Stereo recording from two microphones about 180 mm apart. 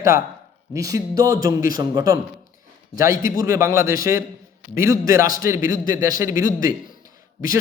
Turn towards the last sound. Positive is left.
turn(degrees=-20)  # may be behind; listen again after turning